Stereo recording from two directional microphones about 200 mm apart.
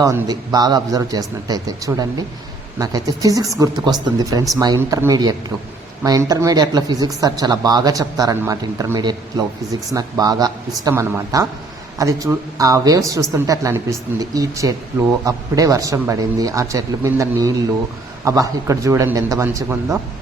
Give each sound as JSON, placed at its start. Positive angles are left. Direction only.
{"t": 0.0, "sound": "a woman's voice", "side_deg": -15}